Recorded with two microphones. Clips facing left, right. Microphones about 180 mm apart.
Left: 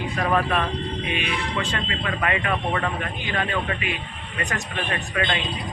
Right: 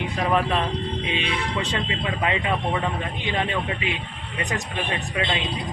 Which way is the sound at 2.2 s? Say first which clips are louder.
Even; 20° right (ahead or behind).